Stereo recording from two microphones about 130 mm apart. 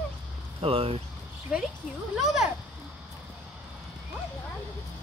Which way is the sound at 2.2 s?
5° right (ahead or behind).